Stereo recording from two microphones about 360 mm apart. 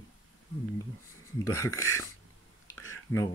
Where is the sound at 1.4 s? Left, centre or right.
Centre.